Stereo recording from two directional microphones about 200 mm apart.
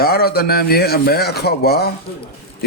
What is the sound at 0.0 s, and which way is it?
Speech, 50° left (ahead or behind).